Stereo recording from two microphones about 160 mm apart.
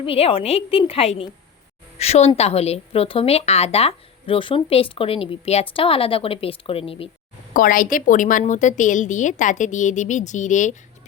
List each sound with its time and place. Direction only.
0.0 s a woman's voice: 35° left (ahead or behind)
7.5 s a woman's voice: 55° left (ahead or behind)